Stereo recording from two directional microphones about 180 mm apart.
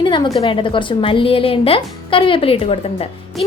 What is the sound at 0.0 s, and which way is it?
A woman's voice, 25° left (ahead or behind).